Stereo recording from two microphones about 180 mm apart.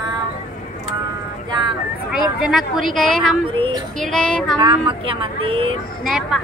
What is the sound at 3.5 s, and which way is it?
Speech, 30° right (ahead or behind).